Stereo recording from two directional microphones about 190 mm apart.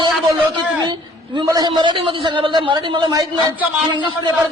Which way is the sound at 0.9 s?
25° right (ahead or behind).